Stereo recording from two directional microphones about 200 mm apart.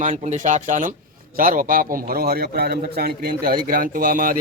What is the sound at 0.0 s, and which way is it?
A man's voice, 40° right (ahead or behind).